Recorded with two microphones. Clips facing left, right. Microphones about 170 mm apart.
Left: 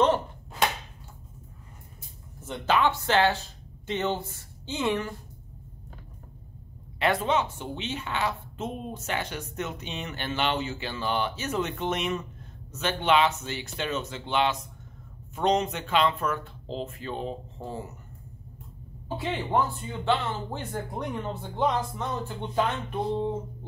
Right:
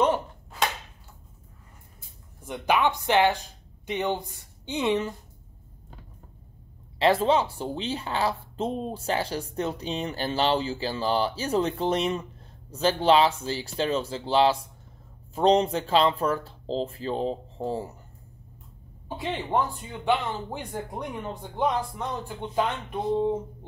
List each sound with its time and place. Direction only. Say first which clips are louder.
2.4 s speech: right 1 dB; 15° right (ahead or behind)
7.0 s speech: right 4 dB; 30° right (ahead or behind)
19.0 s speech: even; 15° right (ahead or behind)